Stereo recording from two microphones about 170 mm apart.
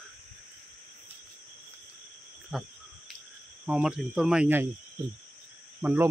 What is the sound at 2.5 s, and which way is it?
Speech, 5° right (ahead or behind).